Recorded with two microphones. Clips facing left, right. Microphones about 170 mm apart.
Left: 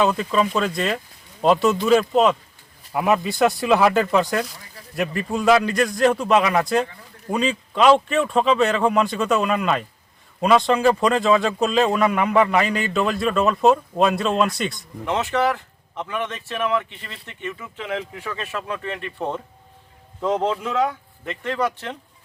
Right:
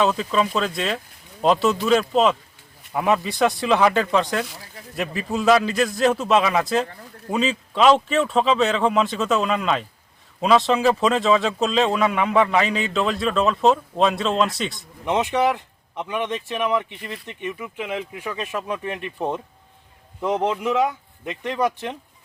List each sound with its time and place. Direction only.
0.0 s speech: centre (ahead or behind)
15.0 s speech: 15° right (ahead or behind)